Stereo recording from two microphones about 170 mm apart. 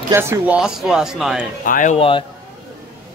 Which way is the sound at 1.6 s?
50° left (ahead or behind).